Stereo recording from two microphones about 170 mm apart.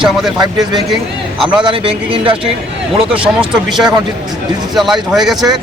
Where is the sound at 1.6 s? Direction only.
30° right (ahead or behind).